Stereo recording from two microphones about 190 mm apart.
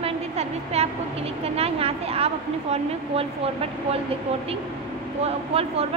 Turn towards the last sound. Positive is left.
turn(degrees=-30)  # may be behind; listen again after turning